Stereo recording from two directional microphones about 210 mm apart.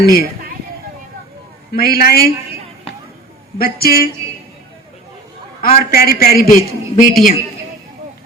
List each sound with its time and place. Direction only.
0.0 s a man's voice: 45° left (ahead or behind)
1.7 s a man's voice: 45° left (ahead or behind)
3.6 s a man's voice: 45° left (ahead or behind)
5.6 s a man's voice: 45° left (ahead or behind)